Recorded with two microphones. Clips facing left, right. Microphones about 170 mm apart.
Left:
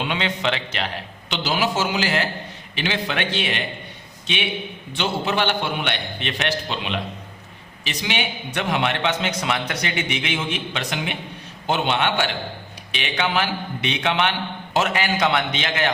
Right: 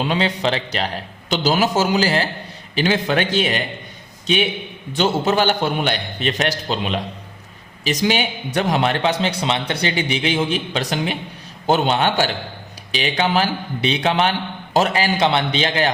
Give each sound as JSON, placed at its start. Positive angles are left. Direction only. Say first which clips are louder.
{"t": 0.0, "sound": "a man's voice", "louder": "right 4 dB", "side_deg": -35}
{"t": 4.9, "sound": "a man's voice", "louder": "right 5 dB", "side_deg": -40}